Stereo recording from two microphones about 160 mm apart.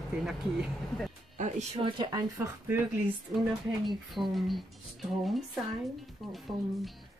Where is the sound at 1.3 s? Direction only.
45° right (ahead or behind).